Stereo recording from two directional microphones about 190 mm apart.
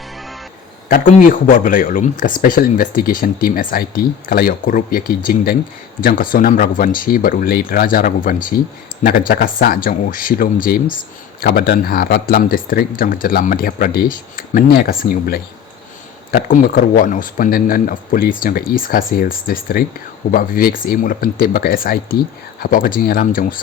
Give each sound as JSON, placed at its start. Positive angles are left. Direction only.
{"t": 0.9, "sound": "speech", "side_deg": 45}